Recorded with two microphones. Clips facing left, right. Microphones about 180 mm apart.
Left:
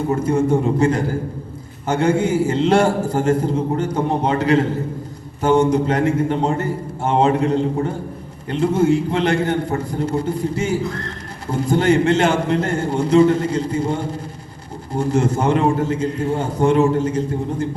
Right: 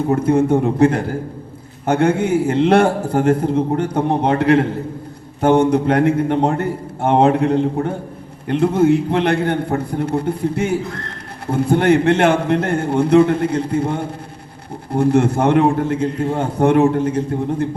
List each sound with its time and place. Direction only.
0.1 s a man's voice: 60° right (ahead or behind)